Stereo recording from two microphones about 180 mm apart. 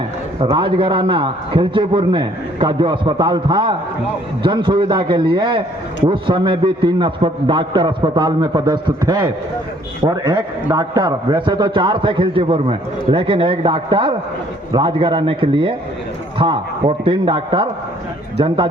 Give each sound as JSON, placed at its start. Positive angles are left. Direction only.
{"t": 0.3, "sound": "a man's voice", "side_deg": -30}